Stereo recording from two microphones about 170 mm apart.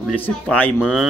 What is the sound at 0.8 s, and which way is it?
Speech, 5° right (ahead or behind).